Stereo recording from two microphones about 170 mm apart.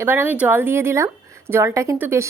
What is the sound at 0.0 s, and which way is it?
Speech, 10° right (ahead or behind).